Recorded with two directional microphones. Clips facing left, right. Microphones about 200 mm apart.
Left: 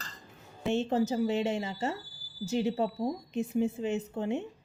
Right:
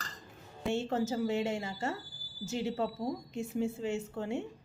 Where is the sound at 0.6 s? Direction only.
20° left (ahead or behind).